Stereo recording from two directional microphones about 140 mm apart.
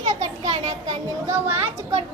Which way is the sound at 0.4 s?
55° right (ahead or behind).